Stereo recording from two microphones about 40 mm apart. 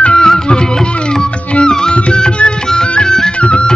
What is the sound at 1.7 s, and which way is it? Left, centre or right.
Music, centre.